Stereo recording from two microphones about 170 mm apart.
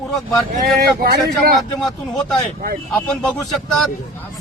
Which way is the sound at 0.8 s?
65° right (ahead or behind).